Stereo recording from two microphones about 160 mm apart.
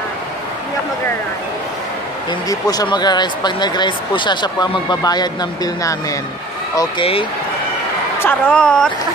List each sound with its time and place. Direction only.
2.7 s speech: 25° left (ahead or behind)
8.2 s a woman's voice: 10° left (ahead or behind)